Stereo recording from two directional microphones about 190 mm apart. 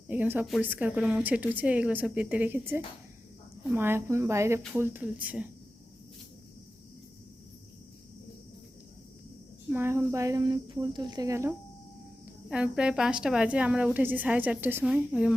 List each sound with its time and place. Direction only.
0.1 s a woman's voice: 10° right (ahead or behind)
9.7 s a woman's voice: 10° right (ahead or behind)
12.5 s a woman's voice: 5° right (ahead or behind)